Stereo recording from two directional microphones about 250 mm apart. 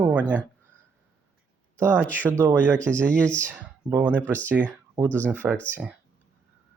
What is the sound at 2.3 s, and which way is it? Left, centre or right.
Speech, centre.